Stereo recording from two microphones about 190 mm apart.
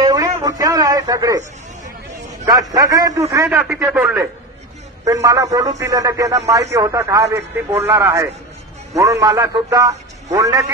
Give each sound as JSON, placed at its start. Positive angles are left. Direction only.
{"t": 0.0, "sound": "a sound", "side_deg": -20}
{"t": 2.1, "sound": "a man's voice", "side_deg": -20}
{"t": 3.4, "sound": "speech", "side_deg": -5}
{"t": 5.0, "sound": "speech", "side_deg": -15}